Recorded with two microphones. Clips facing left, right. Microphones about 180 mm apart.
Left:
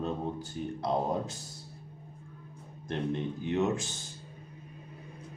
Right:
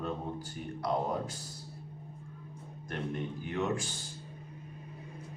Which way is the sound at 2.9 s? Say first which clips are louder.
Left 4 dB; 25° left (ahead or behind).